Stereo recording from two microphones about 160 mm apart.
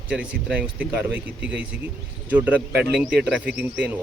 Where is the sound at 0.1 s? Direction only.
5° right (ahead or behind).